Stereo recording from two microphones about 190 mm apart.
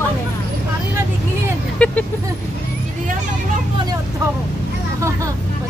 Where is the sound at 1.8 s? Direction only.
5° left (ahead or behind).